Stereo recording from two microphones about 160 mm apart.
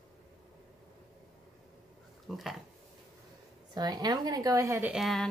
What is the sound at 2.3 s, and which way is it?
Speech, centre (ahead or behind).